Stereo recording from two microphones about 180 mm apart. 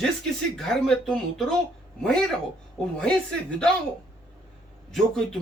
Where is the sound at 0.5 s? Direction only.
5° left (ahead or behind).